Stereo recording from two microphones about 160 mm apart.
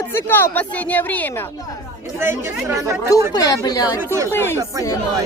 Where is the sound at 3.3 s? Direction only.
25° left (ahead or behind).